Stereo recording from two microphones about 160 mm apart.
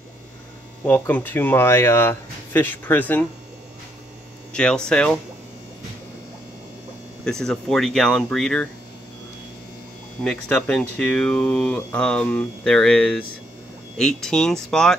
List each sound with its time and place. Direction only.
0.8 s speech: 10° left (ahead or behind)
4.5 s speech: 5° left (ahead or behind)
7.2 s speech: 5° left (ahead or behind)
10.2 s speech: 5° left (ahead or behind)